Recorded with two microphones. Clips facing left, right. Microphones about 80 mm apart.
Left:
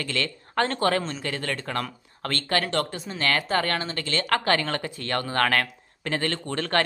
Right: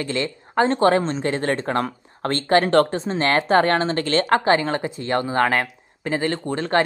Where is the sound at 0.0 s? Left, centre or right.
Right.